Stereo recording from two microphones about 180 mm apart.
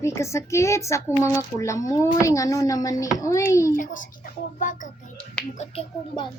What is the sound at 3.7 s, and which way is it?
Speech, 45° left (ahead or behind).